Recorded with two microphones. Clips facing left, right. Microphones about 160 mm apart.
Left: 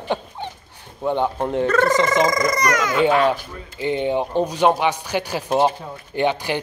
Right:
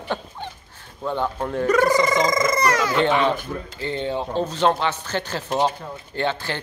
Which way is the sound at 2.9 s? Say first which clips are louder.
Left 2 dB; 5° left (ahead or behind).